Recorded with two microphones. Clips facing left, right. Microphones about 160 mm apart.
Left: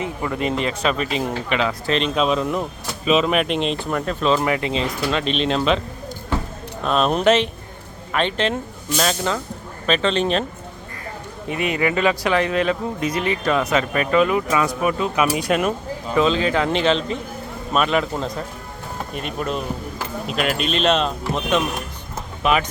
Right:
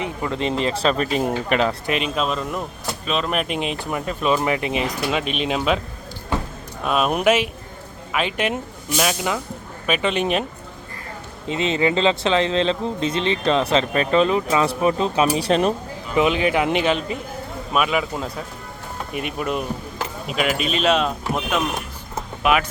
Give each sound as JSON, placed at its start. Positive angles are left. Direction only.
{"t": 0.3, "sound": "speech", "side_deg": -25}
{"t": 1.1, "sound": "speech", "side_deg": -45}
{"t": 1.9, "sound": "speech", "side_deg": -5}
{"t": 4.4, "sound": "speech", "side_deg": -20}
{"t": 6.8, "sound": "speech", "side_deg": -5}
{"t": 11.4, "sound": "speech", "side_deg": -25}
{"t": 16.1, "sound": "speech", "side_deg": -15}
{"t": 19.1, "sound": "speech", "side_deg": -10}
{"t": 22.4, "sound": "speech", "side_deg": -5}